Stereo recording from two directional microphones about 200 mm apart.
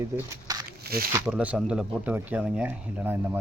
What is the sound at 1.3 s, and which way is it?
Speech, 5° right (ahead or behind).